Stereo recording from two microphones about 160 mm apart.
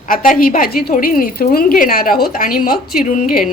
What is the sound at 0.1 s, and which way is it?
A woman's voice, 60° left (ahead or behind).